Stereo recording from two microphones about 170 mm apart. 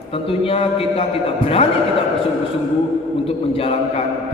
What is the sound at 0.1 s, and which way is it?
Music, 35° left (ahead or behind).